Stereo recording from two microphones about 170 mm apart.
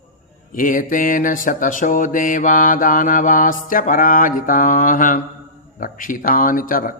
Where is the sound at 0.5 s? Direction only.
55° left (ahead or behind).